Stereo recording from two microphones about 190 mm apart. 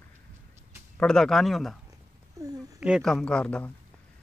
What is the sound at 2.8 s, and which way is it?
Speech, centre (ahead or behind).